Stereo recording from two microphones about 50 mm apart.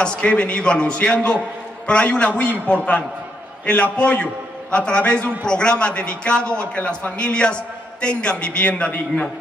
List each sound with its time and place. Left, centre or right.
0.0 s a man's voice: centre